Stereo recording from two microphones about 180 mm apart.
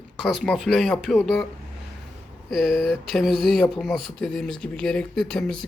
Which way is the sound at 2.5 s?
Centre (ahead or behind).